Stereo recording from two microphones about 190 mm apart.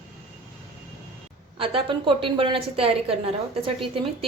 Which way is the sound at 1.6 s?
30° right (ahead or behind).